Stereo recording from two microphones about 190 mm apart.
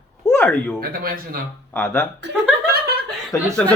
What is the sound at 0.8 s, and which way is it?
Speech, 50° right (ahead or behind).